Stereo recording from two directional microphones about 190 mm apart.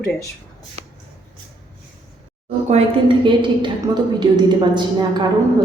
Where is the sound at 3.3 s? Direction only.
25° right (ahead or behind).